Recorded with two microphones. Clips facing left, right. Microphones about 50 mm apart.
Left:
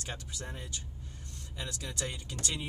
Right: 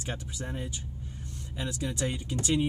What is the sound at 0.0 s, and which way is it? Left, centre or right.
Speech, centre.